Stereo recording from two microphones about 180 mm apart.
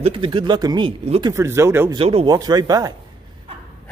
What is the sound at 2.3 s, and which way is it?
Speech, 20° right (ahead or behind).